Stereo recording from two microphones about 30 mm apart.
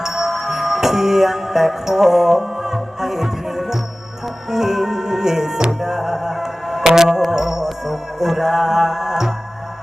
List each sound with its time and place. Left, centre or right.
0.0 s music: centre